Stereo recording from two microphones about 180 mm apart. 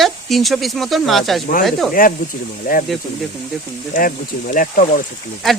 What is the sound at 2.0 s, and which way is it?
Speech, 50° left (ahead or behind).